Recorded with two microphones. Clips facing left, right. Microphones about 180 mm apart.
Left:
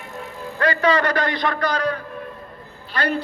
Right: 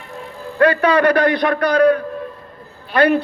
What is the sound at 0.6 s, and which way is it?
A man's voice, 60° right (ahead or behind).